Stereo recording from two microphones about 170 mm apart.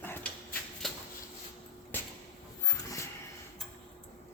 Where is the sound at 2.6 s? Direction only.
20° left (ahead or behind).